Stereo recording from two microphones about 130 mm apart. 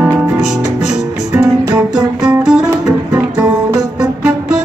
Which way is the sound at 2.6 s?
25° right (ahead or behind).